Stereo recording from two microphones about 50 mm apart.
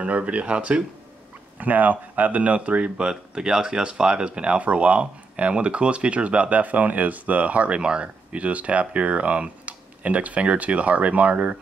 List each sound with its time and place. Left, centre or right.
0.0 s speech: right
1.6 s speech: right